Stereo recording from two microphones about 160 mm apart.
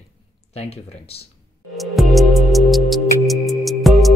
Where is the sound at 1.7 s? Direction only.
Centre (ahead or behind).